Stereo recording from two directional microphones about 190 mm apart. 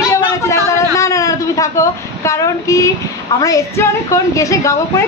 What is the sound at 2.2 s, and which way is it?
A woman's voice, 15° left (ahead or behind).